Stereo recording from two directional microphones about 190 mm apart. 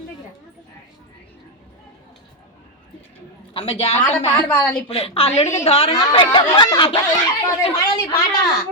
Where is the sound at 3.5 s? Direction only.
30° left (ahead or behind).